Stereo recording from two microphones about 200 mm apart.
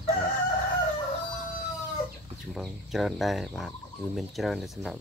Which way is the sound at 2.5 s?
Centre (ahead or behind).